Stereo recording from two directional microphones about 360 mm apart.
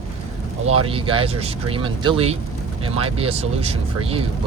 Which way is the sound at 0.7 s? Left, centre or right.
Centre.